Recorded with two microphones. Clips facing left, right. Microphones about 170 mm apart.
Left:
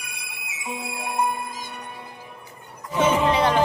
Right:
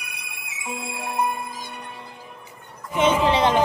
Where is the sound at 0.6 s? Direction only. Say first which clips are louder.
Even; 10° left (ahead or behind).